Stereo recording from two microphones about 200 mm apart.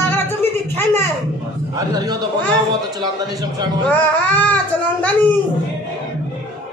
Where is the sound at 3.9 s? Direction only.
10° left (ahead or behind).